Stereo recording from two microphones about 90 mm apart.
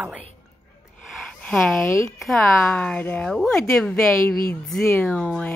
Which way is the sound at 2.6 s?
15° left (ahead or behind).